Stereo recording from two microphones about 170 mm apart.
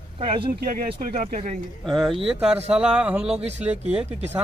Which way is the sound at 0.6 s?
55° right (ahead or behind).